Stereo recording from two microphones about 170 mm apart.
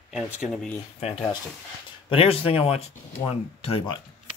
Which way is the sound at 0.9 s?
35° left (ahead or behind).